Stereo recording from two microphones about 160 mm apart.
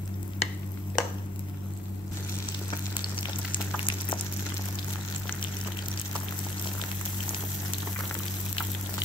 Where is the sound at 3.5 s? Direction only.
30° left (ahead or behind).